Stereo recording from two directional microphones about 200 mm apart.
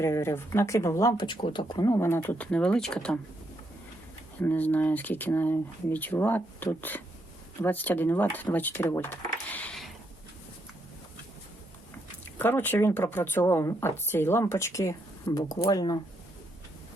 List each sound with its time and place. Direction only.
0.0 s speech: 15° left (ahead or behind)
4.4 s speech: 10° left (ahead or behind)
12.4 s speech: 10° left (ahead or behind)